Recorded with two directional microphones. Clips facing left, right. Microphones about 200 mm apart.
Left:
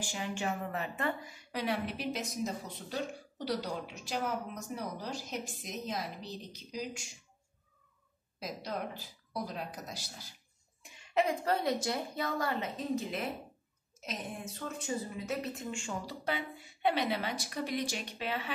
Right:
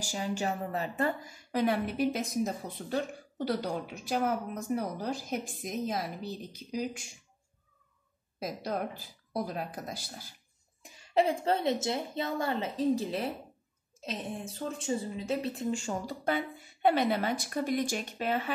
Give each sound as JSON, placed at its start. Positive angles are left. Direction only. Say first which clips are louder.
{"t": 0.0, "sound": "a woman's voice", "louder": "right 3 dB", "side_deg": -40}
{"t": 8.4, "sound": "a woman's voice", "louder": "right 5 dB", "side_deg": -55}
{"t": 10.8, "sound": "a woman's voice", "louder": "right 4 dB", "side_deg": -35}